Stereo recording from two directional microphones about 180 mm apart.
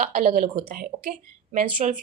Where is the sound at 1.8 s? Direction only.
40° right (ahead or behind).